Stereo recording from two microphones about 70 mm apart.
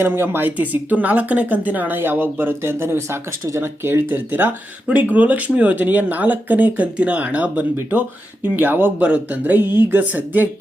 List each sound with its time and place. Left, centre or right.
0.0 s speech: right